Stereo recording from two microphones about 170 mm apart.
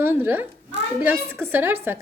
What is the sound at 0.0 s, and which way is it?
A woman's voice, 15° right (ahead or behind).